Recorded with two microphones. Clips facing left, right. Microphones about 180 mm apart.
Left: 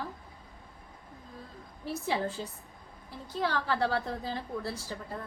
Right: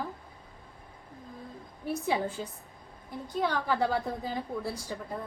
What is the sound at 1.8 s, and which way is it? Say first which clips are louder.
A woman's voice: right 2 dB; 15° right (ahead or behind).